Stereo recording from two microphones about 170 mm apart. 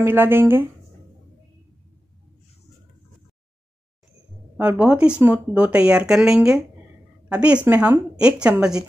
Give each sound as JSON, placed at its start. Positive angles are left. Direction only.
{"t": 0.0, "sound": "a woman's voice", "side_deg": -15}
{"t": 4.6, "sound": "a woman's voice", "side_deg": -10}